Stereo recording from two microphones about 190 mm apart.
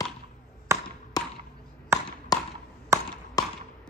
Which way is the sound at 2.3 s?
20° left (ahead or behind).